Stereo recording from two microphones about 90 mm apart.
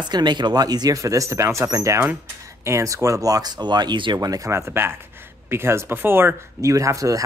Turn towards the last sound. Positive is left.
turn(degrees=-40)  # may be behind; listen again after turning